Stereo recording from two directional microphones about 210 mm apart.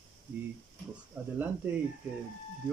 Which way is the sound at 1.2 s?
10° right (ahead or behind).